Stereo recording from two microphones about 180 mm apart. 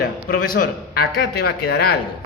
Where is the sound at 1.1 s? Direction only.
65° left (ahead or behind).